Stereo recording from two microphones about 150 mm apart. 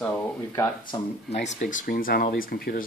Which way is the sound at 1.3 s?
50° left (ahead or behind).